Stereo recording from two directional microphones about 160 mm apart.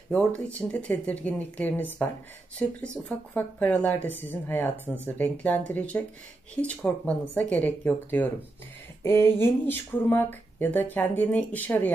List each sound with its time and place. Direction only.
0.1 s speech: 10° left (ahead or behind)